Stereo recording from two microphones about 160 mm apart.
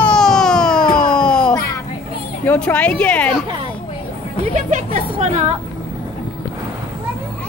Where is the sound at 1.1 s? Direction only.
5° left (ahead or behind).